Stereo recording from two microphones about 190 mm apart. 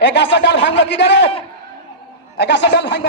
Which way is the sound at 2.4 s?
65° left (ahead or behind).